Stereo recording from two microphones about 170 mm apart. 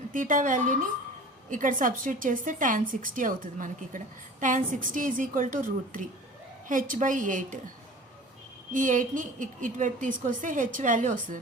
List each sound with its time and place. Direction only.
0.1 s a woman's voice: 50° right (ahead or behind)
8.7 s a woman's voice: 50° right (ahead or behind)